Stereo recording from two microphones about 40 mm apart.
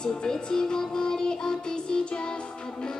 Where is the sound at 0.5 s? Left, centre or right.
Centre.